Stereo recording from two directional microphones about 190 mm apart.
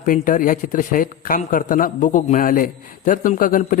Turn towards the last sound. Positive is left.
turn(degrees=45)  # may be behind; listen again after turning